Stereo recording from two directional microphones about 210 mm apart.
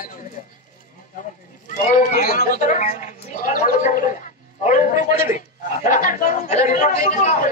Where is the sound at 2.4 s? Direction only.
40° left (ahead or behind).